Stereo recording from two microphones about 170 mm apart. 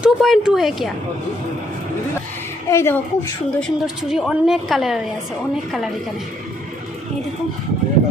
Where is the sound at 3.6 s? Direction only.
Centre (ahead or behind).